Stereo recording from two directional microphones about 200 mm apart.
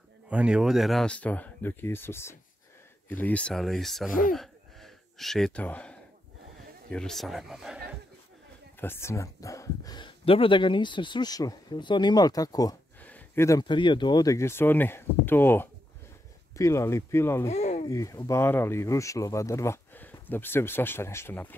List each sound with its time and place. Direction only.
0.3 s speech: 5° right (ahead or behind)
4.3 s a sound: centre (ahead or behind)
6.9 s speech: 5° left (ahead or behind)
8.7 s speech: 10° left (ahead or behind)
17.5 s a sound: 35° left (ahead or behind)
17.8 s speech: 15° left (ahead or behind)